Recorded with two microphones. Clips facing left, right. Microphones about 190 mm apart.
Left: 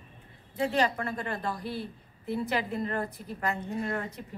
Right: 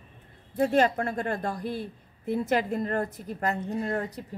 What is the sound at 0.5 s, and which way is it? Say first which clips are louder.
A woman's voice: right 5 dB; 50° right (ahead or behind).